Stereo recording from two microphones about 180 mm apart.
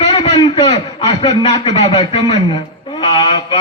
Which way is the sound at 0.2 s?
25° left (ahead or behind).